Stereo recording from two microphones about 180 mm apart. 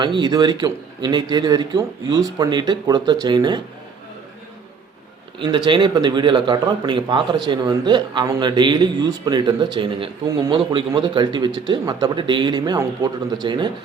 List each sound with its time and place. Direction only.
0.0 s a man's voice: 25° right (ahead or behind)
5.4 s a man's voice: 25° right (ahead or behind)